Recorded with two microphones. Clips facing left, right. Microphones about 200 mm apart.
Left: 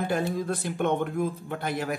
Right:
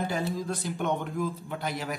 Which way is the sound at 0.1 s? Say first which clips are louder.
Left 3 dB; 55° left (ahead or behind).